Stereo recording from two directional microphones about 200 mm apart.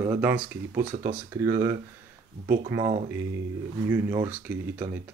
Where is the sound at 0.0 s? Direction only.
10° right (ahead or behind).